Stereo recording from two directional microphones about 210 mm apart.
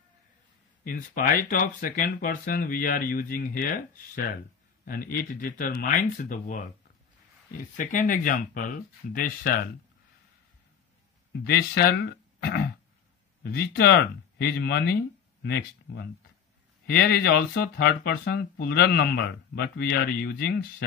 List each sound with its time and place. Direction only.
0.8 s speech: 40° left (ahead or behind)
7.7 s speech: 40° left (ahead or behind)
11.3 s speech: 50° left (ahead or behind)